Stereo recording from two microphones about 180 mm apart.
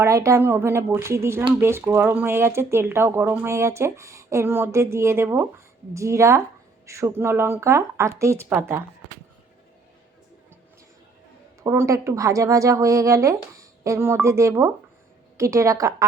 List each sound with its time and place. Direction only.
0.0 s speech: 15° right (ahead or behind)
11.6 s speech: 15° right (ahead or behind)